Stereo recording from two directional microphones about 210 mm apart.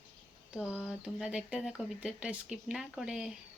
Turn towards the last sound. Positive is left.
turn(degrees=-5)  # may be behind; listen again after turning